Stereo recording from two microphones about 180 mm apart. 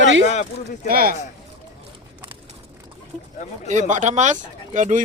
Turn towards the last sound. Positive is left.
turn(degrees=-45)  # may be behind; listen again after turning